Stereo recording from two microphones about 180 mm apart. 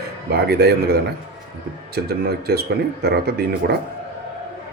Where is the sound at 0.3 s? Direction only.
65° right (ahead or behind).